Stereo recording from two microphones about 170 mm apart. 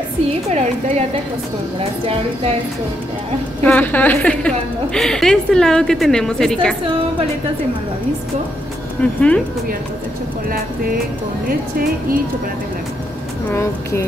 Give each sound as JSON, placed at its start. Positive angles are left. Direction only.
{"t": 0.6, "sound": "a woman's voice", "side_deg": -45}
{"t": 3.6, "sound": "a woman's voice", "side_deg": 10}
{"t": 9.0, "sound": "speech", "side_deg": 5}
{"t": 13.5, "sound": "speech", "side_deg": 15}